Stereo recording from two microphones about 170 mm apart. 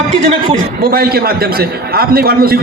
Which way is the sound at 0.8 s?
60° right (ahead or behind).